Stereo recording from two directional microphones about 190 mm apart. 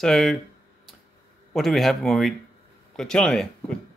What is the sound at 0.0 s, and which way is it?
Speech, centre (ahead or behind).